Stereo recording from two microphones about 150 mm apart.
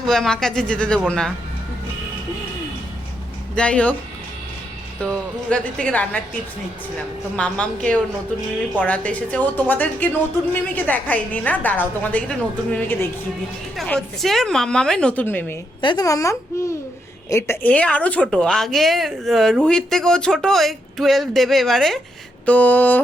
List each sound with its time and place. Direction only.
0.0 s a woman's voice: 5° left (ahead or behind)
3.6 s a woman's voice: 5° left (ahead or behind)
5.0 s a woman's voice: 10° left (ahead or behind)
7.3 s a woman's voice: 5° left (ahead or behind)
15.8 s a woman's voice: 30° left (ahead or behind); by 23.0 s 10° left (ahead or behind)